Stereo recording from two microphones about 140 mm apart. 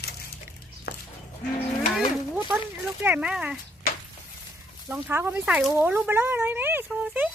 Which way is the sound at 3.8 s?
90° left.